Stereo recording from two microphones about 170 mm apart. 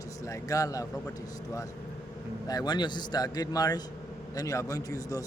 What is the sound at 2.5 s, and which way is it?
Speech, 25° left (ahead or behind).